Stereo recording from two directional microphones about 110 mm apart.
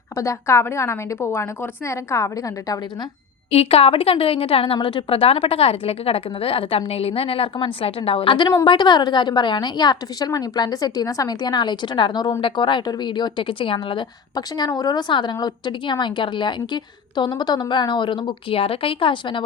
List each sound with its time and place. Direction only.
0.2 s a woman's voice: 25° left (ahead or behind)
3.5 s a woman's voice: 70° left (ahead or behind); by 14.0 s 50° left (ahead or behind)
14.3 s speech: 35° left (ahead or behind); by 19.4 s 55° left (ahead or behind)